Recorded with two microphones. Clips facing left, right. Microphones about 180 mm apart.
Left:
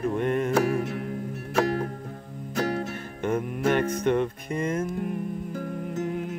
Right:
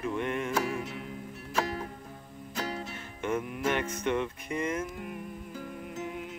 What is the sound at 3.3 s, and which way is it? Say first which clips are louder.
Music: left 5 dB; 40° left (ahead or behind).